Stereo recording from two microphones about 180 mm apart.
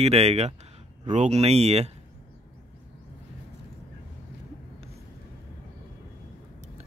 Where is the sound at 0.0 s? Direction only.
35° right (ahead or behind).